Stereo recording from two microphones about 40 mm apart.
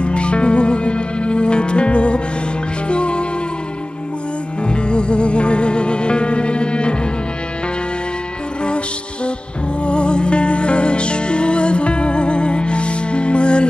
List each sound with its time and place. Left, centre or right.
0.0 s music: left
4.6 s music: left
8.6 s music: left